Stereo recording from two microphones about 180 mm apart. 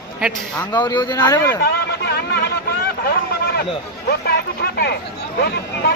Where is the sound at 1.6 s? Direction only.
65° left (ahead or behind).